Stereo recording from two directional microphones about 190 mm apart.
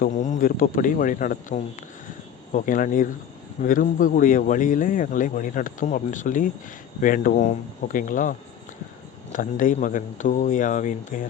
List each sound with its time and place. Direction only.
0.0 s speech: 40° left (ahead or behind)